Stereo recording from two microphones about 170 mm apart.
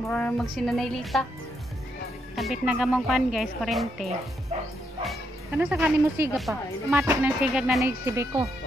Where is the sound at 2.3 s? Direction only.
Centre (ahead or behind).